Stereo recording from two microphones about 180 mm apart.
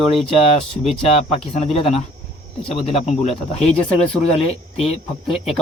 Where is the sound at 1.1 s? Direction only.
35° left (ahead or behind).